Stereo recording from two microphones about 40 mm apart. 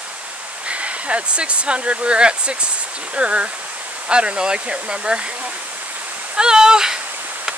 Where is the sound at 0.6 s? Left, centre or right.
Right; by 7.0 s centre.